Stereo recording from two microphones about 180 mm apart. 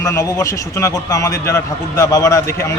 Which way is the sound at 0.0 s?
20° left (ahead or behind).